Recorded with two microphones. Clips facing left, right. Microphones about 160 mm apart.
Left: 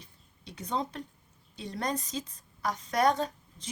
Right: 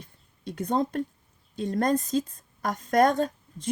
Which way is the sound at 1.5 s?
50° right (ahead or behind).